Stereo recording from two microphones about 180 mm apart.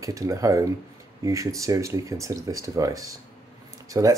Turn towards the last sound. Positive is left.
turn(degrees=-20)  # may be behind; listen again after turning